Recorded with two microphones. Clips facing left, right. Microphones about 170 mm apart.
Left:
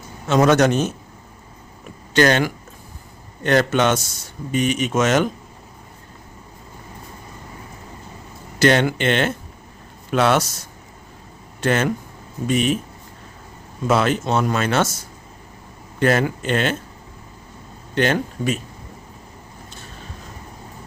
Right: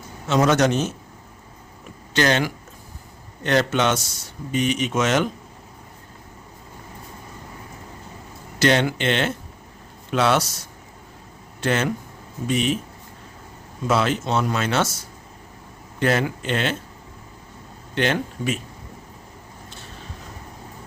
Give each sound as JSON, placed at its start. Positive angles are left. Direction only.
{"t": 0.3, "sound": "speech", "side_deg": 55}
{"t": 2.1, "sound": "speech", "side_deg": 55}
{"t": 8.5, "sound": "speech", "side_deg": 50}
{"t": 11.6, "sound": "speech", "side_deg": 50}
{"t": 13.8, "sound": "speech", "side_deg": 50}
{"t": 16.0, "sound": "speech", "side_deg": 50}
{"t": 17.9, "sound": "speech", "side_deg": 45}